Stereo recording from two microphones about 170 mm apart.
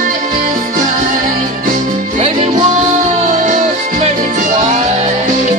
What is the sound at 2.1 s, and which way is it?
Music, 35° right (ahead or behind).